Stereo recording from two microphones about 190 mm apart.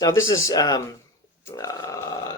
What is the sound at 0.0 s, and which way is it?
Speech, 15° left (ahead or behind).